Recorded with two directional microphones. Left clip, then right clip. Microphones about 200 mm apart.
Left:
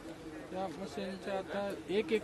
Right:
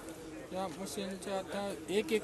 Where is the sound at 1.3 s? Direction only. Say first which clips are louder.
Even; 25° right (ahead or behind).